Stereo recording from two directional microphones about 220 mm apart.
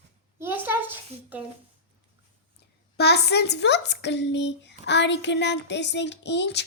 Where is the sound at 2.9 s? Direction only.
50° left (ahead or behind).